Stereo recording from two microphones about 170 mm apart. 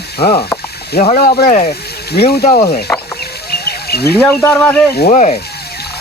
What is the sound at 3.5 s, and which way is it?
Livestock, 70° left (ahead or behind).